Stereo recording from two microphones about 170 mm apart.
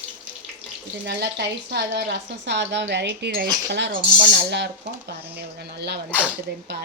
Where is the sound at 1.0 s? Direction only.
80° right.